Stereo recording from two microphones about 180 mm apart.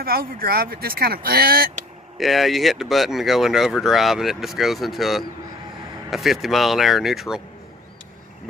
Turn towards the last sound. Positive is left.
turn(degrees=0)  # may be behind; listen again after turning